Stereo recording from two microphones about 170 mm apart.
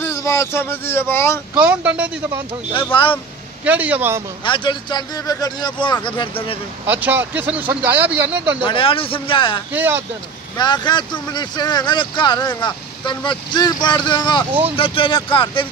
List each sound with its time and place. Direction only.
0.0 s speech: 15° left (ahead or behind)
1.5 s speech: 10° right (ahead or behind)
2.9 s speech: 30° left (ahead or behind)
3.6 s speech: 10° right (ahead or behind)
4.5 s speech: 25° left (ahead or behind)
6.9 s speech: 10° right (ahead or behind)
8.6 s speech: 30° left (ahead or behind)
9.7 s speech: 10° right (ahead or behind)
10.6 s speech: 25° left (ahead or behind)